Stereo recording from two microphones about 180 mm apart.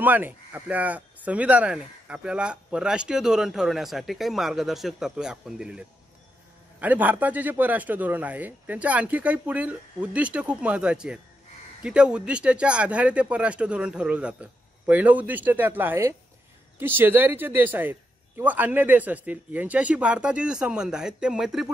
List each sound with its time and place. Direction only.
0.0 s speech: 10° right (ahead or behind)